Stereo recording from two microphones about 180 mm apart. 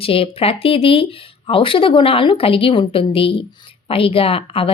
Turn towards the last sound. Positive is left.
turn(degrees=30)  # may be behind; listen again after turning